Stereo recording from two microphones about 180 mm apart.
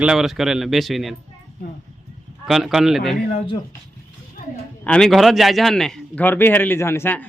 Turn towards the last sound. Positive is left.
turn(degrees=10)  # may be behind; listen again after turning